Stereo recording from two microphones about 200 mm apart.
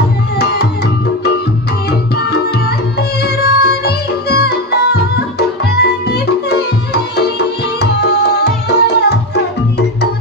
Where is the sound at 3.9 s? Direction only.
55° left (ahead or behind).